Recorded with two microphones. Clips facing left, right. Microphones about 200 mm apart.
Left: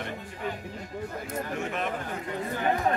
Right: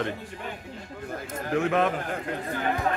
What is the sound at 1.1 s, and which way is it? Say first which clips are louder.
Speech: right 4 dB; 90° right.